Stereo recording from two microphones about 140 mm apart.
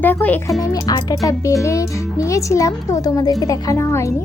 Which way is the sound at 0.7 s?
25° left (ahead or behind).